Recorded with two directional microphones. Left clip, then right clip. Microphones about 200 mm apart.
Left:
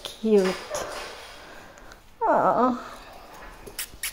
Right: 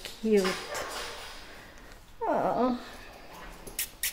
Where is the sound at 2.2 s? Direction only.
5° left (ahead or behind).